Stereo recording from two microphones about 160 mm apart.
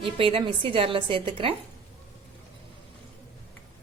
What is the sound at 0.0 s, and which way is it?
A woman's voice, 35° right (ahead or behind).